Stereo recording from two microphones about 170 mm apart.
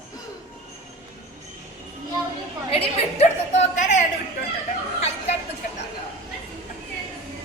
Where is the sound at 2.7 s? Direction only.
40° left (ahead or behind).